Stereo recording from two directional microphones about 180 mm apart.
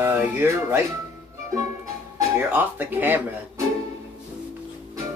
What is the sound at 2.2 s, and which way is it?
Speech, 10° right (ahead or behind).